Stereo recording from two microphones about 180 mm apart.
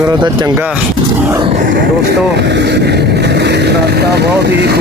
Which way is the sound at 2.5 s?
70° right (ahead or behind).